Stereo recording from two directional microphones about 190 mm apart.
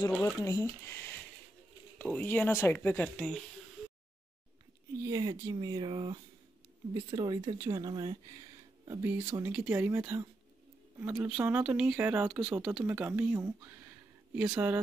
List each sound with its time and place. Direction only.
0.2 s speech: 15° left (ahead or behind)
5.0 s speech: 20° right (ahead or behind)